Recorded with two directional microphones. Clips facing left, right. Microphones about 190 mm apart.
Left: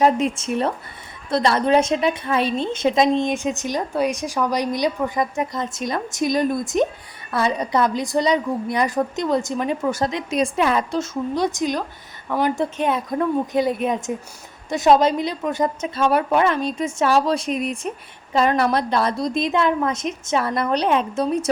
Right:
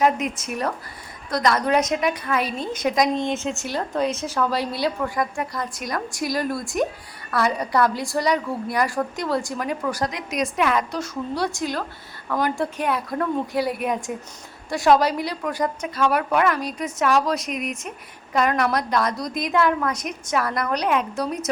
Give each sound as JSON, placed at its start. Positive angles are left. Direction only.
{"t": 0.0, "sound": "a woman's voice", "side_deg": 30}
{"t": 3.2, "sound": "a woman's voice", "side_deg": 15}